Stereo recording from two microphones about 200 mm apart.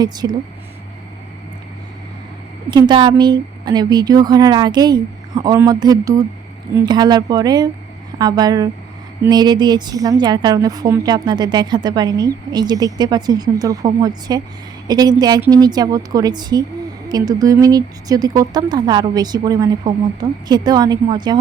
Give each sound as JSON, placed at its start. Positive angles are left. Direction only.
{"t": 0.0, "sound": "a woman's voice", "side_deg": -20}
{"t": 2.6, "sound": "a woman's voice", "side_deg": -20}